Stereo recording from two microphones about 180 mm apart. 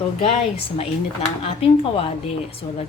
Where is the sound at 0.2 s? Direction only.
35° left (ahead or behind).